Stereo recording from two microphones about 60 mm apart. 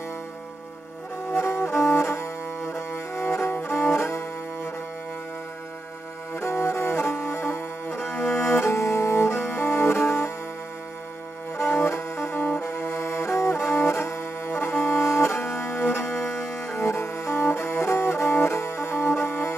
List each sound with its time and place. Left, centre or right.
1.3 s music: left
6.3 s music: left
8.4 s bowed string instrument: left
11.5 s music: left